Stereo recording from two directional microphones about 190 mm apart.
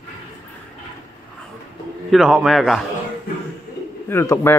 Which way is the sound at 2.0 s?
5° right (ahead or behind).